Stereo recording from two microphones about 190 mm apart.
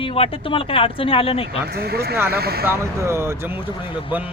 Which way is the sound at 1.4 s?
55° right (ahead or behind).